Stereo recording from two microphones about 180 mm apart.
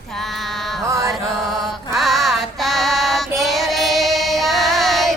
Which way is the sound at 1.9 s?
Centre (ahead or behind).